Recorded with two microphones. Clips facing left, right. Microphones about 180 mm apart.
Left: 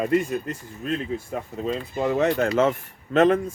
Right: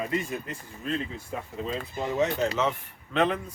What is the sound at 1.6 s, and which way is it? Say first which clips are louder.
Speech: left 7 dB; 60° left (ahead or behind).